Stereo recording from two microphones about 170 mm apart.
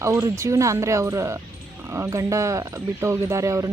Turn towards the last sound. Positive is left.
turn(degrees=-20)  # may be behind; listen again after turning